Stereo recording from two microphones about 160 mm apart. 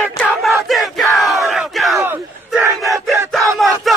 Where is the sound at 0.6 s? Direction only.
Centre (ahead or behind).